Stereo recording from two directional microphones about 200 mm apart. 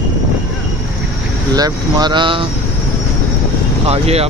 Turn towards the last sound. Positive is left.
turn(degrees=-30)  # may be behind; listen again after turning